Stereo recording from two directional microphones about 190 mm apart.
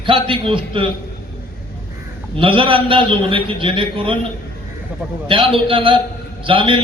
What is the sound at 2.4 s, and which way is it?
A man's voice, 25° right (ahead or behind).